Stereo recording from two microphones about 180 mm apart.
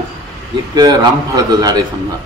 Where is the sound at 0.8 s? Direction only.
20° right (ahead or behind).